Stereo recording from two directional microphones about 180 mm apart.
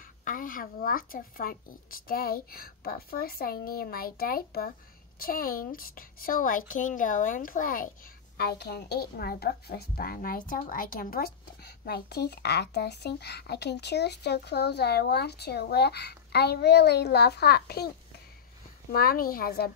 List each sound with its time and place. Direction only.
0.2 s a woman's voice: 45° left (ahead or behind)
8.4 s a woman's voice: 60° left (ahead or behind)